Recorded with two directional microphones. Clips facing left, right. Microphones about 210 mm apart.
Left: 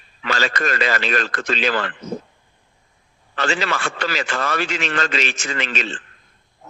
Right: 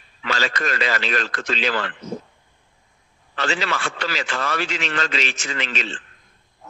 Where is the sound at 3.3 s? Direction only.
50° left (ahead or behind).